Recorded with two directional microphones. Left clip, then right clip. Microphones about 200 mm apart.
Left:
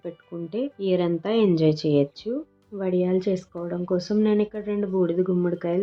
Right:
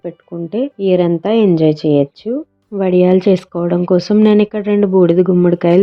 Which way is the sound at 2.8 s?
45° right (ahead or behind).